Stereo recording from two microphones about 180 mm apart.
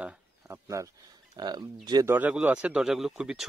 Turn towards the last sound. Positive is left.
turn(degrees=-5)  # may be behind; listen again after turning